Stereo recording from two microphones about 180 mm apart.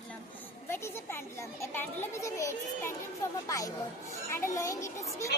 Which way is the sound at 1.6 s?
15° left (ahead or behind).